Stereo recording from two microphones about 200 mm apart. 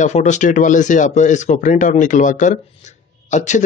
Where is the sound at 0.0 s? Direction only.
35° left (ahead or behind).